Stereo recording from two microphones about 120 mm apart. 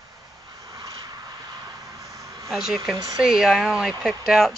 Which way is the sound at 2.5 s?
Centre (ahead or behind).